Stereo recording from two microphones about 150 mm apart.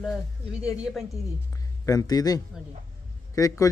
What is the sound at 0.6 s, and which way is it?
Speech, 5° right (ahead or behind).